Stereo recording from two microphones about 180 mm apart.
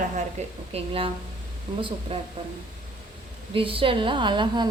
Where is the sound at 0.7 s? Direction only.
30° right (ahead or behind).